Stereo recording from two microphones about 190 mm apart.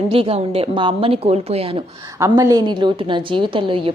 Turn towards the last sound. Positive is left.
turn(degrees=-25)  # may be behind; listen again after turning